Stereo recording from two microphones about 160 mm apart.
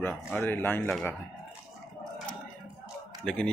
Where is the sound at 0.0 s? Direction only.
10° left (ahead or behind).